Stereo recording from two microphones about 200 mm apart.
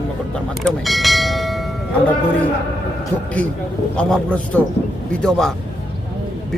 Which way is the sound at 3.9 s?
5° left (ahead or behind).